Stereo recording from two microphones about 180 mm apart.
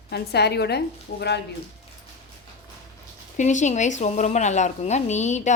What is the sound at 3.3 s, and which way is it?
A woman's voice, 40° left (ahead or behind).